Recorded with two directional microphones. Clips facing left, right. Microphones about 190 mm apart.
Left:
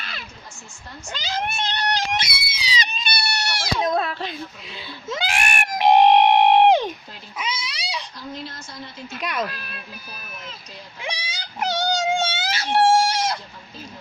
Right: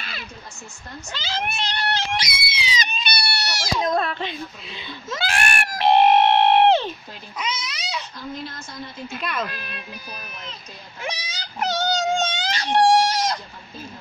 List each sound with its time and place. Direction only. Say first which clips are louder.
1.1 s speech: left 1 dB; 15° left (ahead or behind)
1.9 s a sound: left 1 dB; 15° left (ahead or behind)
2.4 s screaming: right 3 dB; 45° left (ahead or behind)
2.7 s goat: left 1 dB; 35° left (ahead or behind); by 3.8 s 60° left (ahead or behind)
3.8 s speech: even; centre (ahead or behind)
5.1 s screaming: even; 15° left (ahead or behind)
9.2 s speech: left 2 dB; 15° left (ahead or behind)
9.5 s speech: right 2 dB; centre (ahead or behind)
11.0 s a sound: right 1 dB; 10° left (ahead or behind)
12.7 s chicken: even; 10° left (ahead or behind)